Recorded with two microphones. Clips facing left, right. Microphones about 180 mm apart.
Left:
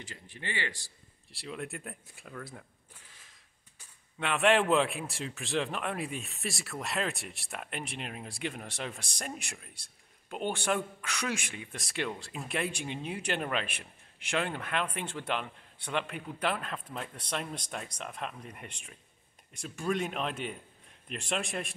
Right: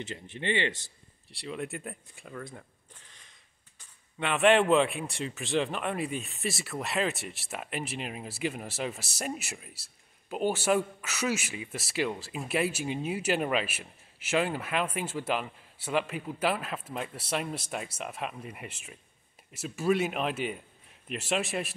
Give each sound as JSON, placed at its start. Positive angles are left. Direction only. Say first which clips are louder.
{"t": 0.0, "sound": "speech", "louder": "right 8 dB", "side_deg": -25}
{"t": 1.3, "sound": "a man's voice", "louder": "right 3 dB", "side_deg": 0}